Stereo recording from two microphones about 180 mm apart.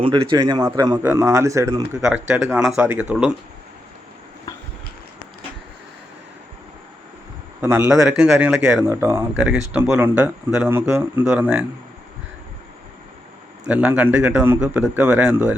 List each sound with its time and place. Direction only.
0.0 s a man's voice: 30° right (ahead or behind)
2.0 s speech: 5° right (ahead or behind)
7.6 s speech: 15° right (ahead or behind)
13.7 s speech: 10° right (ahead or behind)